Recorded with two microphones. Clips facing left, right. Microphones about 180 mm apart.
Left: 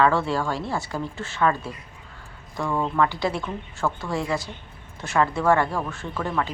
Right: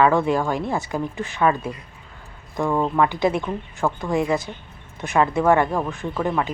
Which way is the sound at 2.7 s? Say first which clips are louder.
Right 2 dB; 20° right (ahead or behind).